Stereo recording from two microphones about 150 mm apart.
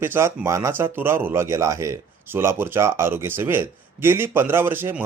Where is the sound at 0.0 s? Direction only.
15° right (ahead or behind).